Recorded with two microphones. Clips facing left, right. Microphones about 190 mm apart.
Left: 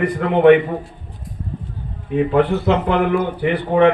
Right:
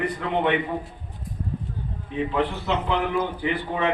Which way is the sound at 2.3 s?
65° left (ahead or behind).